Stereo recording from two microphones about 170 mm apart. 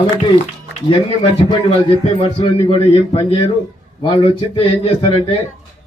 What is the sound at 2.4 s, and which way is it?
A man's voice, 30° left (ahead or behind).